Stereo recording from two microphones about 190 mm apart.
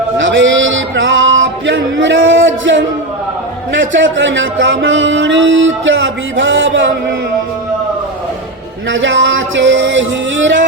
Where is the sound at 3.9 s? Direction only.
80° right.